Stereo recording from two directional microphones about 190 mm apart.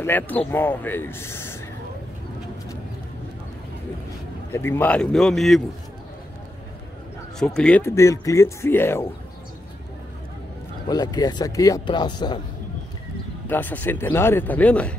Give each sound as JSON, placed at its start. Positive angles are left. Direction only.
{"t": 0.0, "sound": "speech", "side_deg": 10}
{"t": 4.5, "sound": "a man's voice", "side_deg": 10}
{"t": 7.3, "sound": "speech", "side_deg": 5}
{"t": 10.9, "sound": "speech", "side_deg": 20}
{"t": 13.5, "sound": "speech", "side_deg": 10}